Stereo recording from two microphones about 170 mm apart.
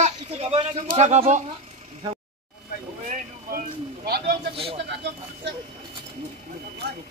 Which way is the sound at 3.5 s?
65° right (ahead or behind).